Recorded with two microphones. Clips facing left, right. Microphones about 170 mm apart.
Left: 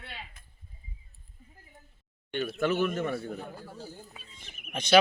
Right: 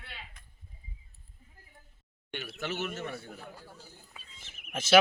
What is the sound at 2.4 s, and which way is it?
Speech, 50° left (ahead or behind).